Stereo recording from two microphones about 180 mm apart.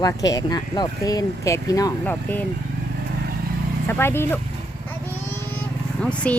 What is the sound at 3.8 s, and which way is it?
Speech, 10° left (ahead or behind).